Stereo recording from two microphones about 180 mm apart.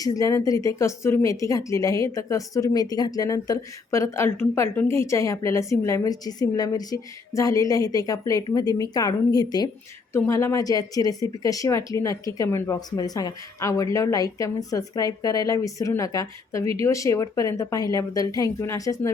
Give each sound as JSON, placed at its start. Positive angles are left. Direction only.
{"t": 0.0, "sound": "speech", "side_deg": 20}